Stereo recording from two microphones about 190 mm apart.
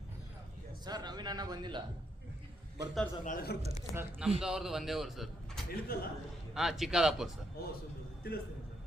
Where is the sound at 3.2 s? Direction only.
50° left (ahead or behind).